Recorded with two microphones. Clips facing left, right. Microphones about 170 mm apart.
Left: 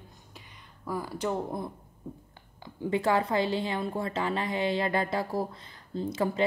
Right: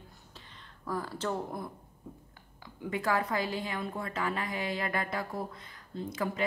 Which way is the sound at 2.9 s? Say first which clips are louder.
Left 5 dB; 25° left (ahead or behind).